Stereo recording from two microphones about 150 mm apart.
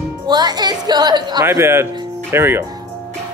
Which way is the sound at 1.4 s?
15° right (ahead or behind).